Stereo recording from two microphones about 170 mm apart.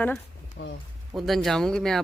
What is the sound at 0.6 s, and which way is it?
Speech, 75° left (ahead or behind).